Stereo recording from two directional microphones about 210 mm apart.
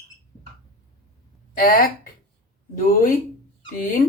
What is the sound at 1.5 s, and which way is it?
Speech, 45° left (ahead or behind).